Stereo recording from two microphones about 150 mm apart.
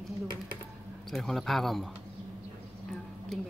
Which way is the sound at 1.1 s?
Centre (ahead or behind).